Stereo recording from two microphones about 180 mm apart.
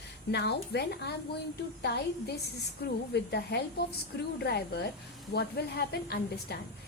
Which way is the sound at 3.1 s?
65° left (ahead or behind).